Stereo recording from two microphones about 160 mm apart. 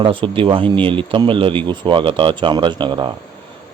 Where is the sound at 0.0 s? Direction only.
35° right (ahead or behind).